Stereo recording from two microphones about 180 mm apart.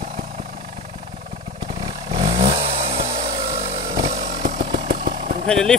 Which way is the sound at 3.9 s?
50° right (ahead or behind).